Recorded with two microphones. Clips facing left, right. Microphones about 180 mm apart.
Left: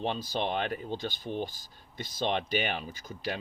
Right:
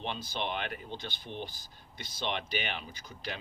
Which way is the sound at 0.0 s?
45° left (ahead or behind).